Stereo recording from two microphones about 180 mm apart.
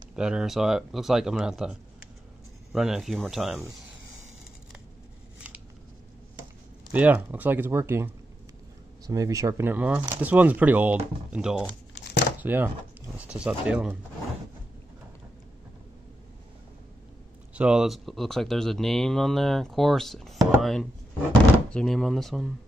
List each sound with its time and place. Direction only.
0.1 s speech: 5° right (ahead or behind)
6.9 s speech: 10° right (ahead or behind)
11.9 s crumpling: 70° left (ahead or behind)
12.4 s speech: 10° right (ahead or behind)
17.6 s speech: 5° right (ahead or behind)